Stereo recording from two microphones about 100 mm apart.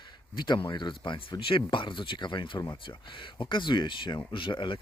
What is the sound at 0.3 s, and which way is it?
Speech, 50° left (ahead or behind).